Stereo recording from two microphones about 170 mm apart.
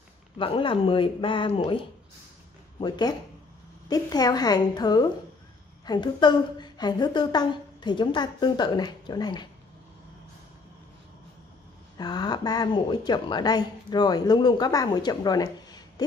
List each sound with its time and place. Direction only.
0.4 s a woman's voice: 30° left (ahead or behind)
12.0 s a woman's voice: 25° left (ahead or behind)